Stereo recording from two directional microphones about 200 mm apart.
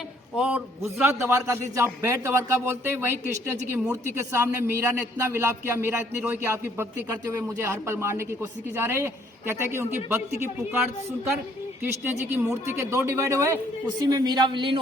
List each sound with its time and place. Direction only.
0.3 s a man's voice: 5° right (ahead or behind)
12.2 s a man's voice: 10° right (ahead or behind)